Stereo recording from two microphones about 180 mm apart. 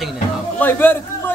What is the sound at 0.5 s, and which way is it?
Speech, 10° left (ahead or behind).